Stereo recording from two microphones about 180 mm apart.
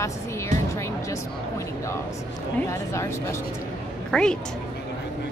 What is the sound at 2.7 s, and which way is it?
Speech, 15° left (ahead or behind).